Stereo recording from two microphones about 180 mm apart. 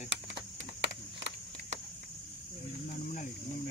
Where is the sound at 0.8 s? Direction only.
80° right.